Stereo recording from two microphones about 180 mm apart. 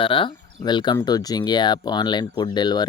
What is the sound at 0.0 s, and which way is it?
Speech, 30° left (ahead or behind).